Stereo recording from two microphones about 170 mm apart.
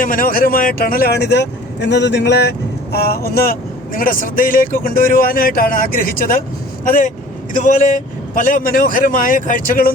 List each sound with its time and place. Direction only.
0.0 s speech: 55° left (ahead or behind)